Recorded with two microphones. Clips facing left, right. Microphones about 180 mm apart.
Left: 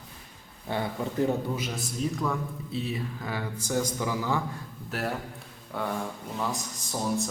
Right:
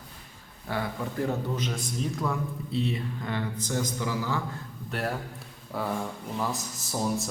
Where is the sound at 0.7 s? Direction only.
20° left (ahead or behind).